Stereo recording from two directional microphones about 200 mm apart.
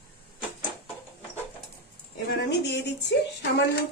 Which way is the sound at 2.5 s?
60° left (ahead or behind).